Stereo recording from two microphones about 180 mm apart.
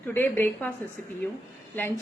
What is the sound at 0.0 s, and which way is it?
Speech, 10° left (ahead or behind).